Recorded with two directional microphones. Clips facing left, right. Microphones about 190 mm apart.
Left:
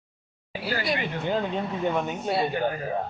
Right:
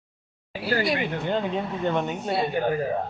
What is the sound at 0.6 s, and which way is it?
Speech, centre (ahead or behind).